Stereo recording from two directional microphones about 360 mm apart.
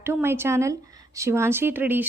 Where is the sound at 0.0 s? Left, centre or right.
Centre.